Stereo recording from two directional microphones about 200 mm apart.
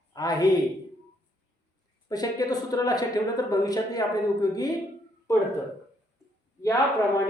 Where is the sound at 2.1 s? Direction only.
20° left (ahead or behind).